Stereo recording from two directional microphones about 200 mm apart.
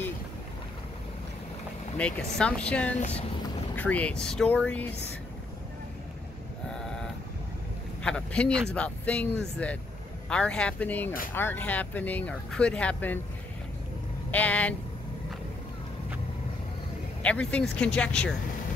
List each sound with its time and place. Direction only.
2.0 s speech: 5° left (ahead or behind)
3.0 s speech: 30° left (ahead or behind)
3.7 s speech: 5° left (ahead or behind)
6.7 s vehicle: 5° left (ahead or behind)
8.0 s speech: 5° left (ahead or behind)
14.3 s speech: 5° left (ahead or behind)
17.2 s speech: 5° left (ahead or behind)